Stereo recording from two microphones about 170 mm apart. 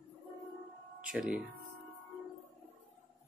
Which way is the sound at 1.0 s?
5° right (ahead or behind).